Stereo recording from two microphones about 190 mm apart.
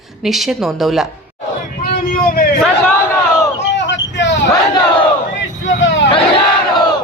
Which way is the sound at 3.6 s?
70° left (ahead or behind).